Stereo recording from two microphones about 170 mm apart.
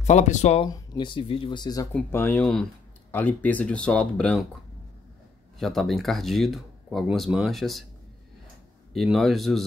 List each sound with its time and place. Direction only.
0.0 s speech: 45° left (ahead or behind)
0.7 s speech: 25° left (ahead or behind)
1.9 s speech: 10° left (ahead or behind)
5.6 s speech: centre (ahead or behind)
8.9 s speech: centre (ahead or behind)